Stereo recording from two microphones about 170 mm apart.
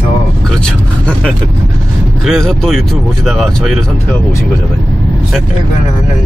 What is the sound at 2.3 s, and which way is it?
Speech, centre (ahead or behind).